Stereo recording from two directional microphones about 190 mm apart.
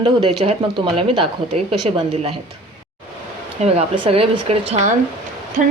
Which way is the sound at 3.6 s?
35° right (ahead or behind).